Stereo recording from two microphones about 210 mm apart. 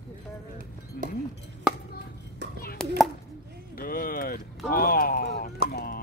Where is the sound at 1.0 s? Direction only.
45° left (ahead or behind).